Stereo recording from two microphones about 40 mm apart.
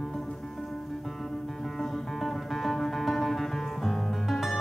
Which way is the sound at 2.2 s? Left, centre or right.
Centre.